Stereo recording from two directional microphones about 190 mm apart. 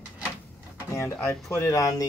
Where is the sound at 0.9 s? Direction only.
15° left (ahead or behind).